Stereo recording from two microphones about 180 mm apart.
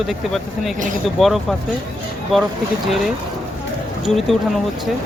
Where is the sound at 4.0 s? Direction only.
Centre (ahead or behind).